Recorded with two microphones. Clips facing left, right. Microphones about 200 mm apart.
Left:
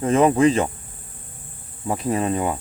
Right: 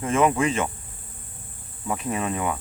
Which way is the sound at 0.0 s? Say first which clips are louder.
Left 5 dB; 35° left (ahead or behind).